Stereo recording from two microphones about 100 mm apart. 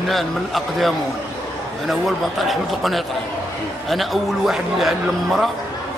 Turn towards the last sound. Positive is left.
turn(degrees=0)  # may be behind; listen again after turning